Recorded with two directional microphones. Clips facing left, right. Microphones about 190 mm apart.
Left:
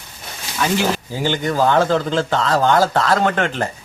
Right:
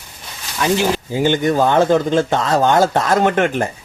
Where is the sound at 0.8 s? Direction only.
20° right (ahead or behind).